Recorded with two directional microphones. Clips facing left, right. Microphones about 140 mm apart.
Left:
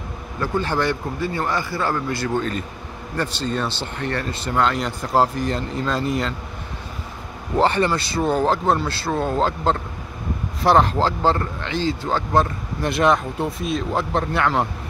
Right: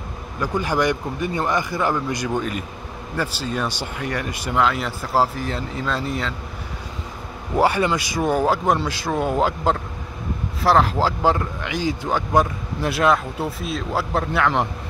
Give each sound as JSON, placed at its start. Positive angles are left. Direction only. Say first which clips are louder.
{"t": 0.4, "sound": "speech", "louder": "right 1 dB", "side_deg": -15}
{"t": 7.5, "sound": "speech", "louder": "even", "side_deg": -10}